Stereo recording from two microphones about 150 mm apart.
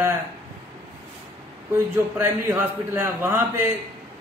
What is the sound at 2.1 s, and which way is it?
A man's voice, 15° right (ahead or behind).